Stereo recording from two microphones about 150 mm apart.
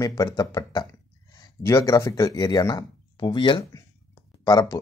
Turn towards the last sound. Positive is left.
turn(degrees=25)  # may be behind; listen again after turning